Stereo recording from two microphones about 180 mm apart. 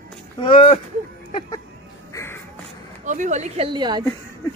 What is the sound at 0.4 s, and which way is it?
Speech, 30° left (ahead or behind).